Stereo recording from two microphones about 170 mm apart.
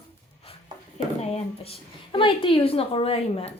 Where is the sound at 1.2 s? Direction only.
35° left (ahead or behind).